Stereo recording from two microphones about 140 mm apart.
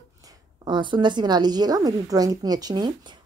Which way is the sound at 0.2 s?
30° right (ahead or behind).